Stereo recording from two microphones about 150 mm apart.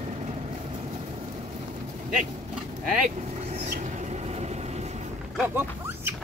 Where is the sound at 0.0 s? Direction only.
50° right (ahead or behind).